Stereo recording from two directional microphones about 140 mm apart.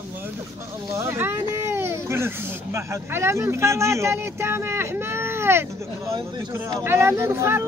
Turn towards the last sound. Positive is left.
turn(degrees=-20)  # may be behind; listen again after turning